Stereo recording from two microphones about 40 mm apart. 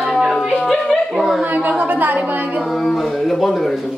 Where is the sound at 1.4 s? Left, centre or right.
Right.